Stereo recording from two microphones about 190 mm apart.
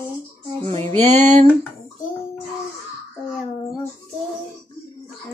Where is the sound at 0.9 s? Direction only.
35° right (ahead or behind).